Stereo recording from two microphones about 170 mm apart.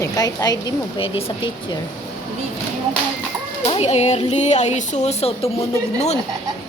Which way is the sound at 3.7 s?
40° left (ahead or behind).